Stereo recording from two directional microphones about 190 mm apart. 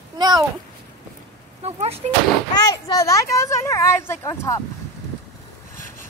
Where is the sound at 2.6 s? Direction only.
20° left (ahead or behind).